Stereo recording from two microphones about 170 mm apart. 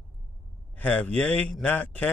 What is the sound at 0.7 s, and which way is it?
A man's voice, 10° left (ahead or behind).